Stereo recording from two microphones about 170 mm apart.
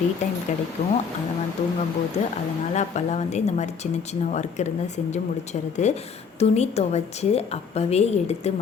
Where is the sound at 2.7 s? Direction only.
40° left (ahead or behind).